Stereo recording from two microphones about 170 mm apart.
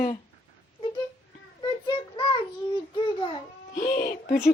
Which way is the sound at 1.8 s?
25° left (ahead or behind).